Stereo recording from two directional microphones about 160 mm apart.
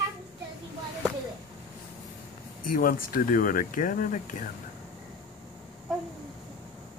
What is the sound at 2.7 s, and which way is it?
Speech, 65° left (ahead or behind).